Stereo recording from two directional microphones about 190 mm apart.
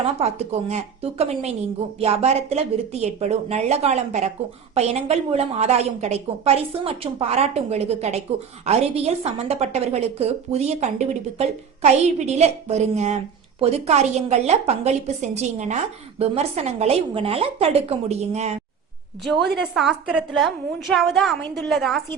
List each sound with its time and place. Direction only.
0.0 s a woman's voice: 35° right (ahead or behind)
19.2 s a woman's voice: centre (ahead or behind)